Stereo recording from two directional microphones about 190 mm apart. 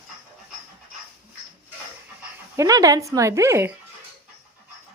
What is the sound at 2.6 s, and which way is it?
Speech, 20° right (ahead or behind).